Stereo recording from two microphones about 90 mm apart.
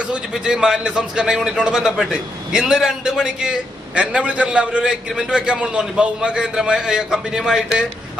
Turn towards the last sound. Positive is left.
turn(degrees=-5)  # may be behind; listen again after turning